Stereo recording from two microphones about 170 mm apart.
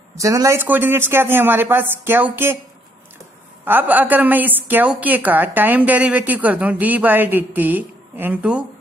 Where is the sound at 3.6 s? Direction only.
10° right (ahead or behind).